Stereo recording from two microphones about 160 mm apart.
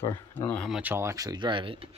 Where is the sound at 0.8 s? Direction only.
15° right (ahead or behind); by 1.9 s 35° right (ahead or behind).